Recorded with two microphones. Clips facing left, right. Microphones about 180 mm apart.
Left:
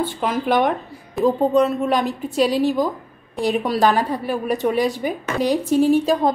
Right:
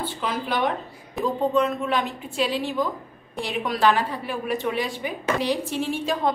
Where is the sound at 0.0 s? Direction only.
50° left (ahead or behind).